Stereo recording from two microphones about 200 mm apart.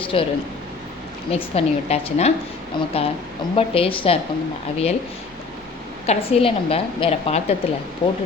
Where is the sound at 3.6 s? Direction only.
30° left (ahead or behind).